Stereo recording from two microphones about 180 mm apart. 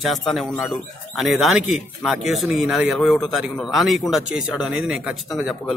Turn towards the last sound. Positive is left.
turn(degrees=0)  # may be behind; listen again after turning